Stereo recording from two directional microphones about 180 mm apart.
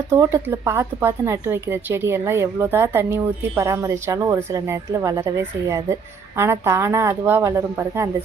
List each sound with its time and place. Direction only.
0.1 s speech: 15° right (ahead or behind)